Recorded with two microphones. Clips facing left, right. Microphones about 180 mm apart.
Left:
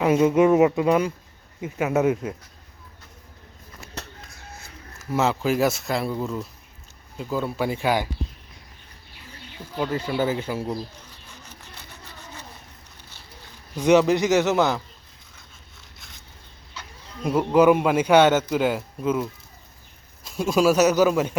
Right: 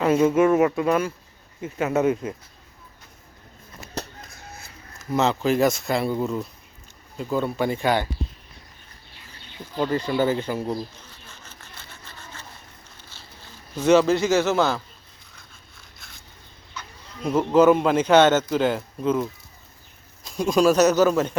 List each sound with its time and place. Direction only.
0.0 s a man's voice: 15° left (ahead or behind)
4.0 s chicken: 35° right (ahead or behind)
4.9 s speech: 5° left (ahead or behind)
9.7 s a man's voice: 5° left (ahead or behind)
11.4 s a sound: 15° left (ahead or behind)
13.7 s a man's voice: 15° left (ahead or behind)
15.8 s a sound: 20° left (ahead or behind)
17.2 s a man's voice: 10° left (ahead or behind)